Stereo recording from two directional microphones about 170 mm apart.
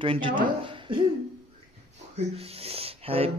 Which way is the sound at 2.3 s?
35° right (ahead or behind).